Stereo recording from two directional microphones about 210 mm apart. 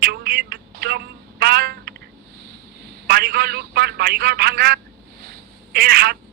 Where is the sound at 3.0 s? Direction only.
50° right (ahead or behind).